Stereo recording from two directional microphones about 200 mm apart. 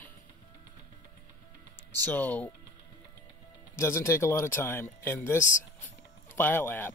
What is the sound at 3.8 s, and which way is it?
Speech, 15° left (ahead or behind).